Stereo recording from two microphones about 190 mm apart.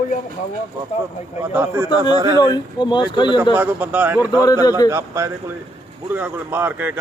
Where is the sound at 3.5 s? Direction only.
10° right (ahead or behind).